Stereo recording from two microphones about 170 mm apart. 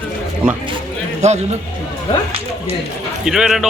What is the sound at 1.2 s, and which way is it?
Speech, 40° right (ahead or behind).